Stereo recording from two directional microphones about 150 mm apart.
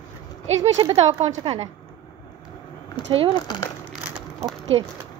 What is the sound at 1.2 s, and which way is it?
Speech, 45° right (ahead or behind).